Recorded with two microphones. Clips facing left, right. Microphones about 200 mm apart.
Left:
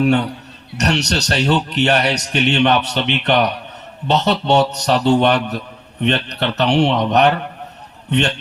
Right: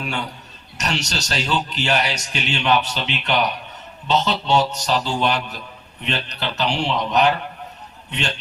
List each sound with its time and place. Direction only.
0.0 s a man's voice: 65° left (ahead or behind)